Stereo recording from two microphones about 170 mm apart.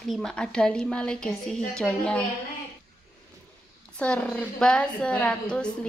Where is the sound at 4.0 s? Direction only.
5° left (ahead or behind).